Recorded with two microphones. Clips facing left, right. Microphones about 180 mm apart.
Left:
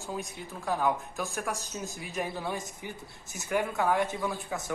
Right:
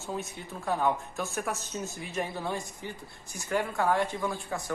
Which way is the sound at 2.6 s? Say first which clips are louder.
Even; 20° left (ahead or behind).